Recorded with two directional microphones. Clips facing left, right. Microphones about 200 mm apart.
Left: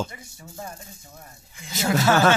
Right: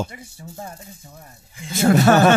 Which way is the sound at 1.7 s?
55° right (ahead or behind).